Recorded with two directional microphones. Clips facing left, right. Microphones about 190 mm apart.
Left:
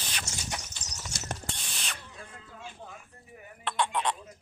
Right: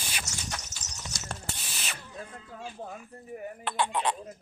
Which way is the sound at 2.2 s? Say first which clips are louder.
Right 5 dB; 40° right (ahead or behind).